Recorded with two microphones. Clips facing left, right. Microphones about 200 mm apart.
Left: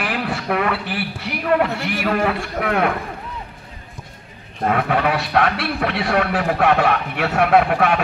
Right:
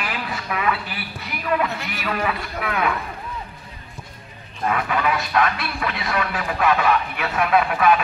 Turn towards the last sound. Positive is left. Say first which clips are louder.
# left 2 dB
turn(degrees=65)  # may be behind; listen again after turning